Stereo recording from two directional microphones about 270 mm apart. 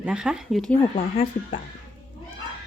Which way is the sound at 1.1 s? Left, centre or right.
Left.